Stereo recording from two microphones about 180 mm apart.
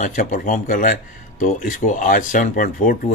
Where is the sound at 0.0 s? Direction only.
45° left (ahead or behind).